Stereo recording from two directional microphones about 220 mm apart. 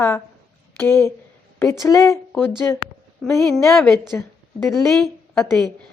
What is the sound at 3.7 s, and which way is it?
A woman's voice, centre (ahead or behind).